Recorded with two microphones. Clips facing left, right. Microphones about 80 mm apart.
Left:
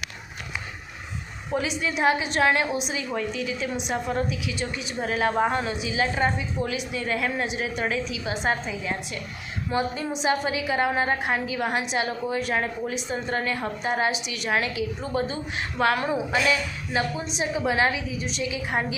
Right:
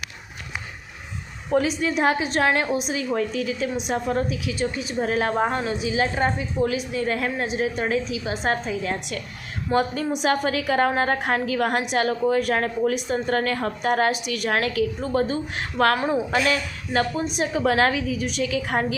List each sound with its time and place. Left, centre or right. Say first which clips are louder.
1.5 s a woman's voice: right 5 dB; right
8.8 s a woman's voice: right 3 dB; right
9.7 s a woman's voice: right 4 dB; right
15.0 s a woman's voice: right 4 dB; right